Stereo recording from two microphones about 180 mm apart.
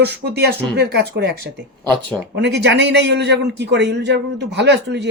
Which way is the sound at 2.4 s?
70° right (ahead or behind).